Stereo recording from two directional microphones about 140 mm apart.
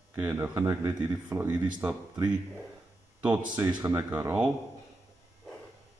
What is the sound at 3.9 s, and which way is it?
Speech, 15° right (ahead or behind).